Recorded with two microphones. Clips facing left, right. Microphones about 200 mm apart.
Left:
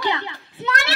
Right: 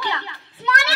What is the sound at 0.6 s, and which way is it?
Child singing, 20° left (ahead or behind).